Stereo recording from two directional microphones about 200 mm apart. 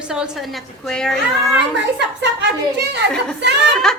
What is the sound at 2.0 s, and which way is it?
A woman's voice, 60° right (ahead or behind).